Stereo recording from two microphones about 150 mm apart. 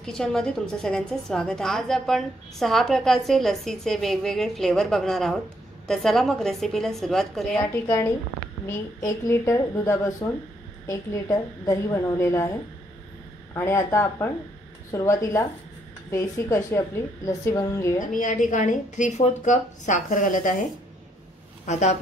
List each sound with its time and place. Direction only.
0.0 s a woman's voice: 5° left (ahead or behind)
7.6 s a woman's voice: 15° left (ahead or behind)
13.6 s a woman's voice: 20° left (ahead or behind)
18.1 s a woman's voice: 55° left (ahead or behind)
21.6 s speech: 50° left (ahead or behind)